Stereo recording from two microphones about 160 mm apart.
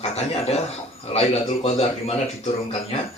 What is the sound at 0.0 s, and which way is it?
A man's voice, 40° left (ahead or behind).